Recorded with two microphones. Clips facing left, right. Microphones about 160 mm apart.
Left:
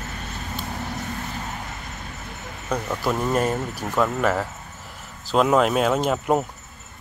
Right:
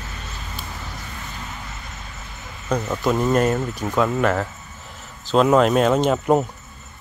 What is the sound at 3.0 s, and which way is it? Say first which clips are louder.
Speech: right 4 dB; centre (ahead or behind).